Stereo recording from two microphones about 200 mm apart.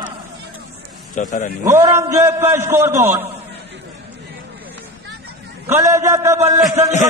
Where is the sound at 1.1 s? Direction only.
40° left (ahead or behind).